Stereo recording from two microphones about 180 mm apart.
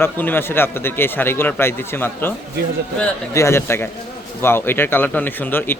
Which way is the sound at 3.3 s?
15° left (ahead or behind).